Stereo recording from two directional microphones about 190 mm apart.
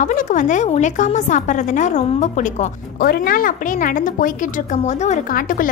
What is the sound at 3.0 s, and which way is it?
A woman's voice, 55° left (ahead or behind).